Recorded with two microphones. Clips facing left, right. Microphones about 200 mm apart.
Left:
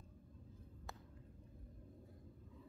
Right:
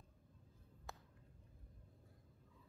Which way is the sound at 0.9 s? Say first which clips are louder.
Even; centre (ahead or behind).